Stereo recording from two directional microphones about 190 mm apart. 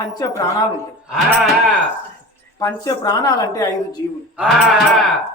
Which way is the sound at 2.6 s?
20° left (ahead or behind).